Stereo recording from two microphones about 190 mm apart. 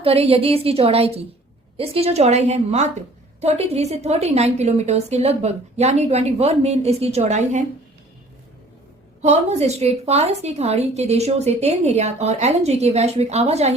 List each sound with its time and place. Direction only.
0.0 s a woman's voice: 30° right (ahead or behind)
9.2 s a woman's voice: 35° right (ahead or behind)